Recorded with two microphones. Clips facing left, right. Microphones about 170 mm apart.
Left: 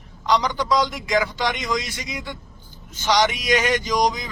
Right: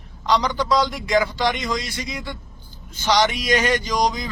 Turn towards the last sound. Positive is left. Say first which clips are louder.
# left 1 dB
turn(degrees=15)  # may be behind; listen again after turning